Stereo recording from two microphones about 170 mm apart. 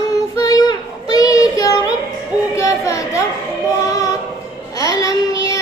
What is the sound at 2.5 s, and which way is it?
Speech, 20° left (ahead or behind).